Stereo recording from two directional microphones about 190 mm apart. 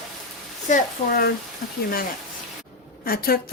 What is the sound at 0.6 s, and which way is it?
Speech, 45° left (ahead or behind).